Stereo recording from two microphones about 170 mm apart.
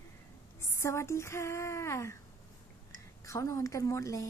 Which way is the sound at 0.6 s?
15° left (ahead or behind).